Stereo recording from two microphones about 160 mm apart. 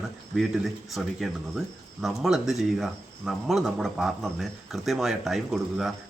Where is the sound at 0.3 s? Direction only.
Centre (ahead or behind).